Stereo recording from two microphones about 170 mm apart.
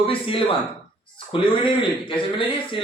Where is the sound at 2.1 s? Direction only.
30° left (ahead or behind).